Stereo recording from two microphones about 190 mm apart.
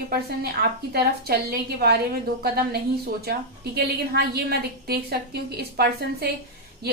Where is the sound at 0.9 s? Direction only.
55° right (ahead or behind).